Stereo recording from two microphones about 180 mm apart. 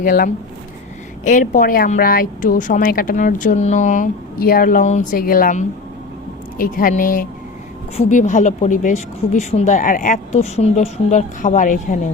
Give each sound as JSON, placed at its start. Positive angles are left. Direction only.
{"t": 0.0, "sound": "a woman's voice", "side_deg": 50}